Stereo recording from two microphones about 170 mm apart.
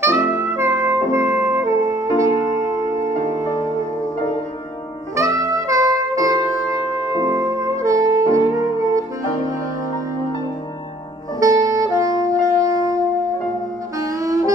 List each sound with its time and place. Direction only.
0.0 s music: 15° right (ahead or behind)
5.1 s saxophone: 20° right (ahead or behind)
11.3 s saxophone: 20° right (ahead or behind)